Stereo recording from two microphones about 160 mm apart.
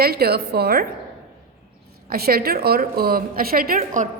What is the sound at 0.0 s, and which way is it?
Speech, 75° right (ahead or behind).